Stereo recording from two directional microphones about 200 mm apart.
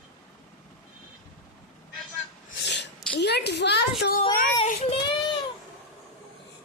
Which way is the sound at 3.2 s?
55° left (ahead or behind).